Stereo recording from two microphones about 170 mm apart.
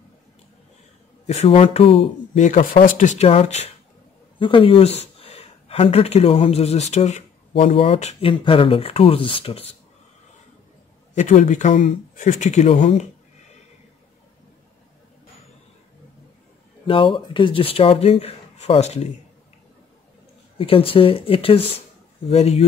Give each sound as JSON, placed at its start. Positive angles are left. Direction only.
{"t": 1.2, "sound": "speech", "side_deg": 40}
{"t": 2.3, "sound": "speech", "side_deg": 50}
{"t": 11.1, "sound": "speech", "side_deg": 45}
{"t": 16.8, "sound": "speech", "side_deg": 30}
{"t": 20.5, "sound": "speech", "side_deg": 35}